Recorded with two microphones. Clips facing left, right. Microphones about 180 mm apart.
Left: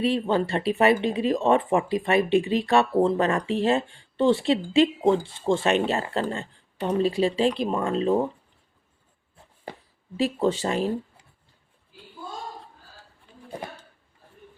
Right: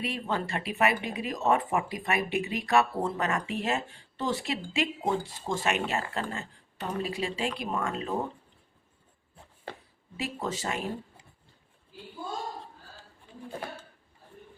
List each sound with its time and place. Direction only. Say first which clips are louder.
0.0 s speech: left 9 dB; 30° left (ahead or behind)
10.2 s speech: left 10 dB; 30° left (ahead or behind)